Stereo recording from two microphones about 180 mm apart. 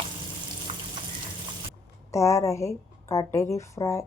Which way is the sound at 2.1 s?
25° left (ahead or behind).